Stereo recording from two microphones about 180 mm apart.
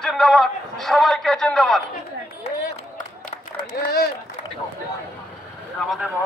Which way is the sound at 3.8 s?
60° left (ahead or behind).